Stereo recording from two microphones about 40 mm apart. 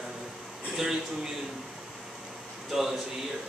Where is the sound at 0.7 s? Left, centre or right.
Centre.